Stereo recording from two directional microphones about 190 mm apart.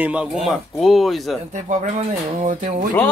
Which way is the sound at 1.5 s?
40° right (ahead or behind).